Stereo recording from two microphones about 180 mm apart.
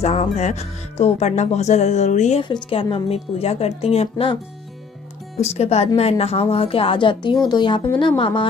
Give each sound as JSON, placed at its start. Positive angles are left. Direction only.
{"t": 0.0, "sound": "speech", "side_deg": 35}
{"t": 2.4, "sound": "speech", "side_deg": 30}
{"t": 5.4, "sound": "speech", "side_deg": 35}